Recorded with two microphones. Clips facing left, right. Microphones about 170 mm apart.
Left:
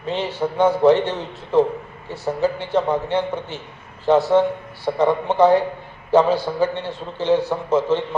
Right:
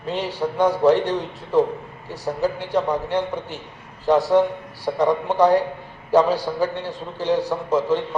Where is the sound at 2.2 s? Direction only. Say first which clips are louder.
Left 2 dB; 10° right (ahead or behind).